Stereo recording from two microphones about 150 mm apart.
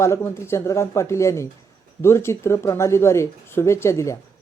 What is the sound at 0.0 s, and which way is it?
Speech, 20° left (ahead or behind).